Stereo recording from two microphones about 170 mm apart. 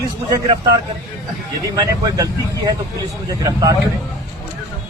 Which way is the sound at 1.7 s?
20° right (ahead or behind).